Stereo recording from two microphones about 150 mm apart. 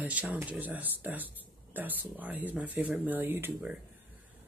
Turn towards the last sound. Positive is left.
turn(degrees=-15)  # may be behind; listen again after turning